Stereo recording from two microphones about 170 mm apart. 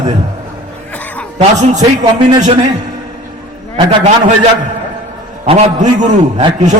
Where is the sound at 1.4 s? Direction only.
45° right (ahead or behind).